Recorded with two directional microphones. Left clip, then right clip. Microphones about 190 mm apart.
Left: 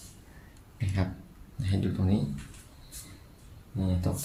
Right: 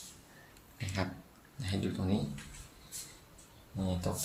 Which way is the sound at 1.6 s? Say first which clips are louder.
Left 4 dB; 10° left (ahead or behind).